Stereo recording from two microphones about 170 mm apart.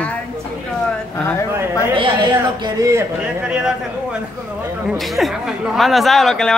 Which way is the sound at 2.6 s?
20° right (ahead or behind).